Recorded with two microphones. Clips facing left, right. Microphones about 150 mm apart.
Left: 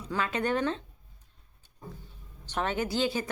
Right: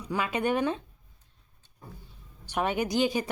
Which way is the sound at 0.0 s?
10° right (ahead or behind).